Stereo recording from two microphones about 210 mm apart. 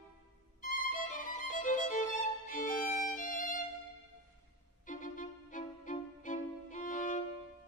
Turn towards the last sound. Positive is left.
turn(degrees=35)  # may be behind; listen again after turning